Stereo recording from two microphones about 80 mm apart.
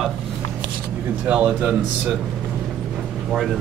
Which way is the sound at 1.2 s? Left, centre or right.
Centre.